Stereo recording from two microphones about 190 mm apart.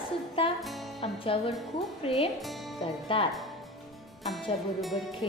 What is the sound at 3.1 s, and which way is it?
Speech, 30° left (ahead or behind).